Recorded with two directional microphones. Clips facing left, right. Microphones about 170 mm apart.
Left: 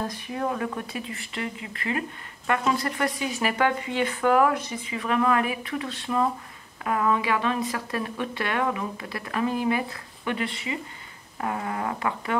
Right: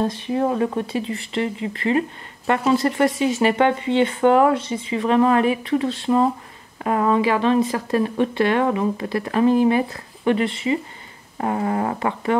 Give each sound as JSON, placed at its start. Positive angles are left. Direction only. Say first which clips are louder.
{"t": 0.0, "sound": "speech", "louder": "right 8 dB", "side_deg": -30}